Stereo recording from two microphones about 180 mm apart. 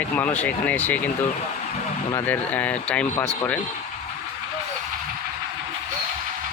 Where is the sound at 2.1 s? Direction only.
10° left (ahead or behind).